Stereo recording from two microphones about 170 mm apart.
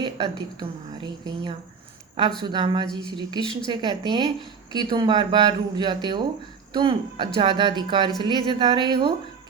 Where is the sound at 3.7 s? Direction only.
25° right (ahead or behind).